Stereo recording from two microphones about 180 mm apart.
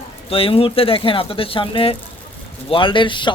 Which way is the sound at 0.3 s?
30° left (ahead or behind).